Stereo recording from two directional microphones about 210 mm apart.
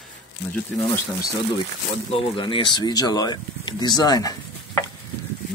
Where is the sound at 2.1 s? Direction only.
25° left (ahead or behind).